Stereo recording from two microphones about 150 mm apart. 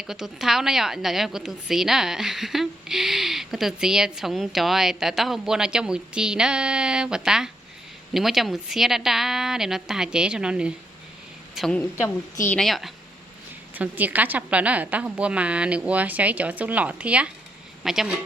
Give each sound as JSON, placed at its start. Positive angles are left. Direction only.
{"t": 0.1, "sound": "a woman's voice", "side_deg": -5}
{"t": 13.7, "sound": "a woman's voice", "side_deg": -10}